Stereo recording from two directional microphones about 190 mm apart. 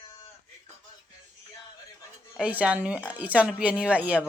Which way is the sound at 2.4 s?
5° right (ahead or behind).